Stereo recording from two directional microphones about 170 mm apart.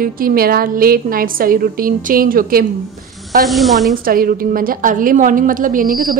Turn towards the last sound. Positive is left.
turn(degrees=-50)  # may be behind; listen again after turning